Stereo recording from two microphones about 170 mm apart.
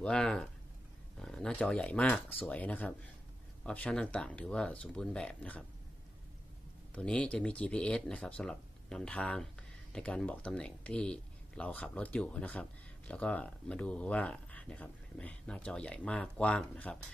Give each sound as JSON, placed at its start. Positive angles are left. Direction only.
{"t": 0.0, "sound": "speech", "side_deg": 5}
{"t": 7.0, "sound": "speech", "side_deg": 5}